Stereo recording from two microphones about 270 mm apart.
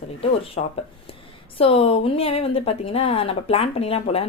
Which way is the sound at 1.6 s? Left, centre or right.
Left.